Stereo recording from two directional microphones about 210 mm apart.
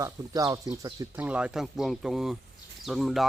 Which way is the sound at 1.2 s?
5° right (ahead or behind).